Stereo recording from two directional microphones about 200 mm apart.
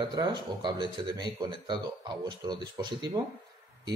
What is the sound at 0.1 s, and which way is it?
Speech, 20° right (ahead or behind).